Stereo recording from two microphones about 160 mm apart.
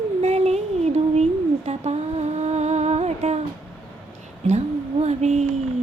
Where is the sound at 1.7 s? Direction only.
40° right (ahead or behind).